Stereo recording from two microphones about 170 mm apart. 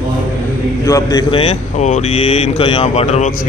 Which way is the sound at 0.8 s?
20° left (ahead or behind).